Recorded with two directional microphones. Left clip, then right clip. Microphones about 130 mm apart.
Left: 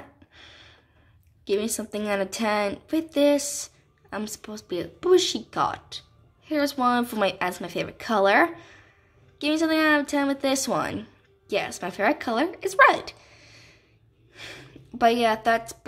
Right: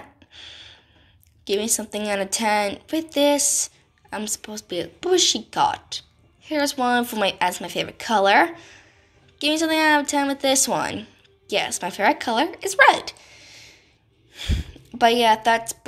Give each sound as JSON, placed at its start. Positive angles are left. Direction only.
{"t": 0.3, "sound": "a sound", "side_deg": 40}
{"t": 1.4, "sound": "a woman's voice", "side_deg": 30}
{"t": 14.3, "sound": "snort", "side_deg": 35}
{"t": 15.0, "sound": "a woman's voice", "side_deg": 30}